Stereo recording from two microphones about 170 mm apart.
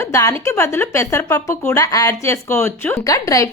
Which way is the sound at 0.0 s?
15° left (ahead or behind).